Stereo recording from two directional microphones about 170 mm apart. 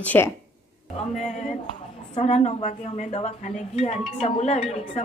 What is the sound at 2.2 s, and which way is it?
A woman's voice, 45° left (ahead or behind).